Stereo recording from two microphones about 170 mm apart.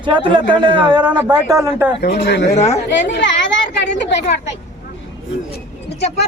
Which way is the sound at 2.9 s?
90° left.